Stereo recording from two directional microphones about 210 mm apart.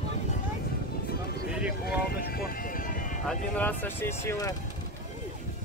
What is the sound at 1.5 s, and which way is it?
Clip-clop, 5° right (ahead or behind).